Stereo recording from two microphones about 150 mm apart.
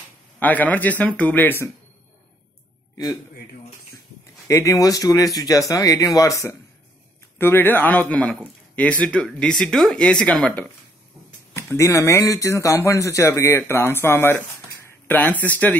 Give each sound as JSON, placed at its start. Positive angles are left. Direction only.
{"t": 0.4, "sound": "speech", "side_deg": 10}
{"t": 4.5, "sound": "speech", "side_deg": 20}
{"t": 11.5, "sound": "speech", "side_deg": 20}